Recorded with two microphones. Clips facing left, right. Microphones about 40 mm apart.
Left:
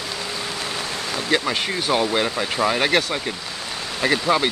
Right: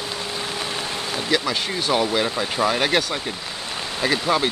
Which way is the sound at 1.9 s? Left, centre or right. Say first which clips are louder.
Even; centre.